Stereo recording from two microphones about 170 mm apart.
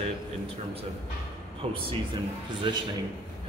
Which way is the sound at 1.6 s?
35° right (ahead or behind).